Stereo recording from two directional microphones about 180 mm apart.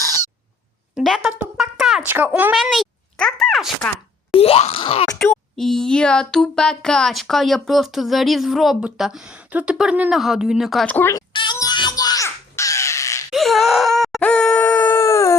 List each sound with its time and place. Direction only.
0.9 s speech: centre (ahead or behind)
4.4 s speech: 35° left (ahead or behind)
5.1 s a sound: centre (ahead or behind)
11.3 s crow: 25° left (ahead or behind)
13.3 s groan: centre (ahead or behind); by 15.4 s 15° left (ahead or behind)